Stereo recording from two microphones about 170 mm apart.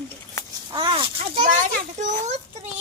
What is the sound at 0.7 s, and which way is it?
Speech, 30° right (ahead or behind).